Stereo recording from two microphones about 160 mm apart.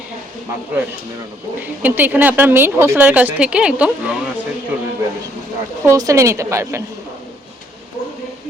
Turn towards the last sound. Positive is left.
turn(degrees=-20)  # may be behind; listen again after turning